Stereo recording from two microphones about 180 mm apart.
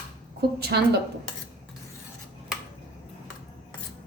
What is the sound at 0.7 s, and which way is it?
Speech, 65° right (ahead or behind).